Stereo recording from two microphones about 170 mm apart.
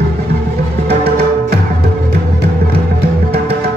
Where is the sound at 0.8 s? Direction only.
35° right (ahead or behind).